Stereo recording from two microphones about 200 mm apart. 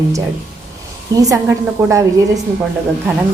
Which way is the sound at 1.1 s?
15° right (ahead or behind).